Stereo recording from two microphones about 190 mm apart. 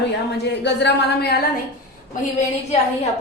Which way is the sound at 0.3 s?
65° left (ahead or behind).